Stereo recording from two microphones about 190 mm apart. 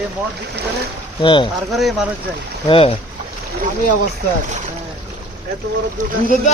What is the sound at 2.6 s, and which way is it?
Speech, 30° left (ahead or behind).